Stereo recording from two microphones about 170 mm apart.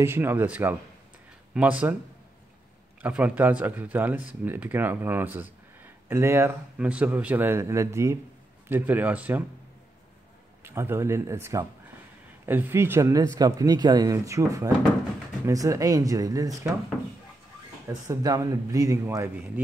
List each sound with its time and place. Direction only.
0.0 s speech: 15° right (ahead or behind)
3.0 s speech: 5° right (ahead or behind)
10.6 s speech: 15° right (ahead or behind)
17.8 s speech: 20° right (ahead or behind)